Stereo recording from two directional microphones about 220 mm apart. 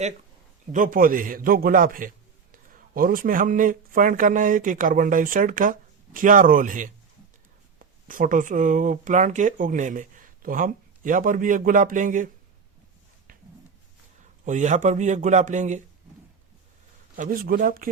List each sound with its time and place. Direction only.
0.7 s speech: 40° right (ahead or behind)
8.0 s speech: 35° right (ahead or behind)
14.4 s speech: 35° right (ahead or behind)
17.2 s speech: 40° right (ahead or behind)